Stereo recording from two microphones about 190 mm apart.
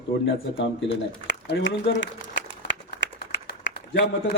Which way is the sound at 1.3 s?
70° left (ahead or behind).